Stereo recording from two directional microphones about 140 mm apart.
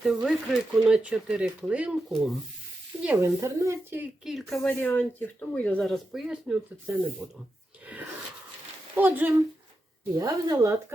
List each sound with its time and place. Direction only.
0.0 s speech: 5° right (ahead or behind)
3.2 s speech: 25° right (ahead or behind)
4.2 s speech: centre (ahead or behind)
4.9 s speech: 15° left (ahead or behind)
5.8 s speech: centre (ahead or behind)
9.0 s speech: 10° right (ahead or behind)
10.1 s speech: 25° right (ahead or behind)